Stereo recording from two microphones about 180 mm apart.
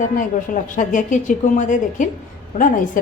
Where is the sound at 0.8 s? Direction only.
45° left (ahead or behind).